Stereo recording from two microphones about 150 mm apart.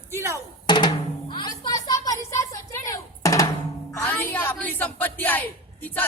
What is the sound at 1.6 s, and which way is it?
Drum, 25° left (ahead or behind).